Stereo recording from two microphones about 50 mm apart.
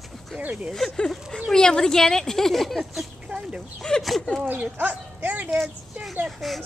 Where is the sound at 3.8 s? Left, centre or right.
Centre.